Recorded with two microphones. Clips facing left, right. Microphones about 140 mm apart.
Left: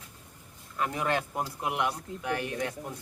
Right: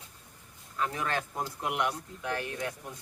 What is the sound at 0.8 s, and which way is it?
Speech, 15° left (ahead or behind).